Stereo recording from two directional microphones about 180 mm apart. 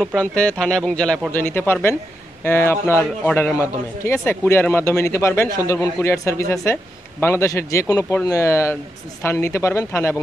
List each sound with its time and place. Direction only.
0.0 s a man's voice: 5° left (ahead or behind)